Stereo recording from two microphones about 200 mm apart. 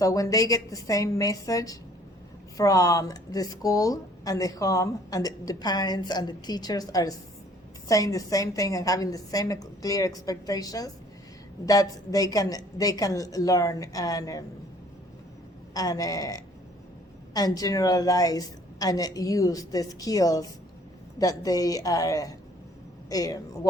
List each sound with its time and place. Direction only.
0.0 s speech: 15° left (ahead or behind)
15.7 s speech: 20° left (ahead or behind)